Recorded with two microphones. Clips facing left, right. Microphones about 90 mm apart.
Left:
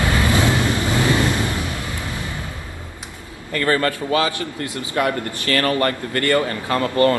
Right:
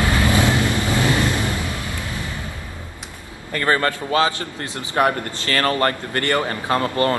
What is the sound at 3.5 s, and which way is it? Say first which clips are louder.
A man's voice: even; 35° right (ahead or behind).